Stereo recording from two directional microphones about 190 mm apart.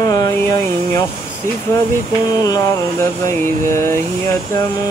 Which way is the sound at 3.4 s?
15° left (ahead or behind).